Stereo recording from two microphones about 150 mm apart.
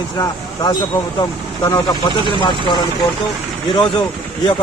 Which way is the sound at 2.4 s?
30° left (ahead or behind).